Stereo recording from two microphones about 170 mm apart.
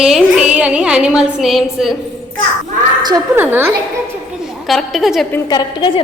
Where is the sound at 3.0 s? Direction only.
20° right (ahead or behind).